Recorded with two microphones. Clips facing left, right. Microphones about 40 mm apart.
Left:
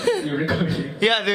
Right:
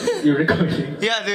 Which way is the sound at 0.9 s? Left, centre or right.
Centre.